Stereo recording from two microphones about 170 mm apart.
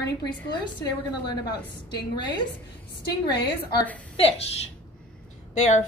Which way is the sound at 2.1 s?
25° left (ahead or behind).